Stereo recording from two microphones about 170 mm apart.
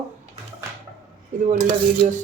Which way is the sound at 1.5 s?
50° right (ahead or behind).